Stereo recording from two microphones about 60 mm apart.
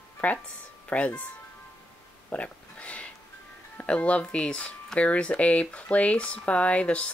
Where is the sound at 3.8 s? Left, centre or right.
Left.